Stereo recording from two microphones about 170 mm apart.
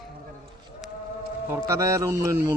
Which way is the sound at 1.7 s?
20° right (ahead or behind).